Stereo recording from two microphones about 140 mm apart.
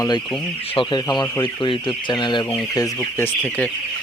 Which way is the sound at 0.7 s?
30° left (ahead or behind).